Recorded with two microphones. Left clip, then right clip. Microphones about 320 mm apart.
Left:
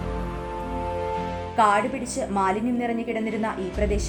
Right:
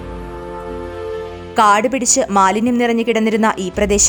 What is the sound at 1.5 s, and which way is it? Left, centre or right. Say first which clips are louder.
A woman's voice: right 8 dB; right.